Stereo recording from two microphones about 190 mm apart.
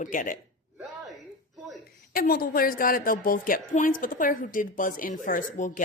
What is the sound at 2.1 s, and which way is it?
A woman's voice, 50° left (ahead or behind).